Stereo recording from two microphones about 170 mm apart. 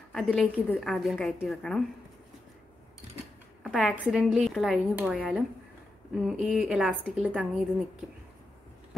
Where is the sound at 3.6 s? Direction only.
Centre (ahead or behind).